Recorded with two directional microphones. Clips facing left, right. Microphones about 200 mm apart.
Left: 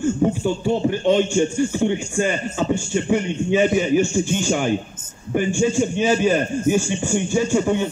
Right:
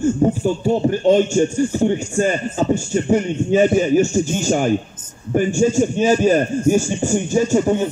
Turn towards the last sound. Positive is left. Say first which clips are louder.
# right 3 dB
turn(degrees=-40)  # may be behind; listen again after turning